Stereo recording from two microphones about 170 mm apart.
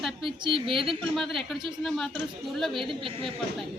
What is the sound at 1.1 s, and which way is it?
Speech, centre (ahead or behind).